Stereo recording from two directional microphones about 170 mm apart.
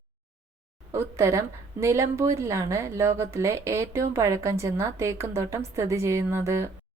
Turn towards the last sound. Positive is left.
turn(degrees=-15)  # may be behind; listen again after turning